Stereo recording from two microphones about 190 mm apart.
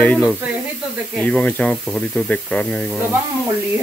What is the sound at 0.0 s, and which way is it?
Speech, 10° left (ahead or behind).